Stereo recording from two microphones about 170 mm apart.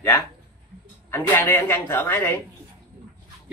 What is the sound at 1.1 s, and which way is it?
Speech, 10° left (ahead or behind).